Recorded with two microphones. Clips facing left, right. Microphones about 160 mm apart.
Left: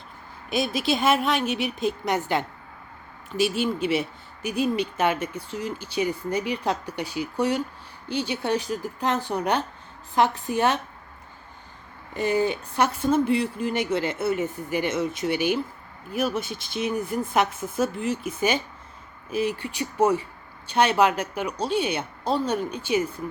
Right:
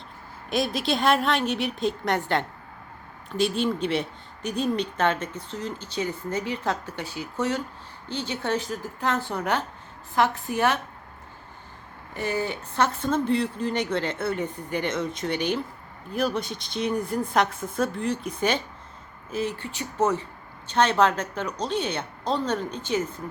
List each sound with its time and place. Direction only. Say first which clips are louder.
0.5 s a woman's voice: left 1 dB; centre (ahead or behind); by 10.8 s 20° left (ahead or behind)
12.1 s speech: left 5 dB; 15° left (ahead or behind)